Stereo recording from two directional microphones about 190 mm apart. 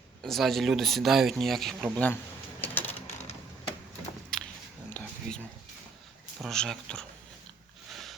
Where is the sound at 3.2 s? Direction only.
35° left (ahead or behind).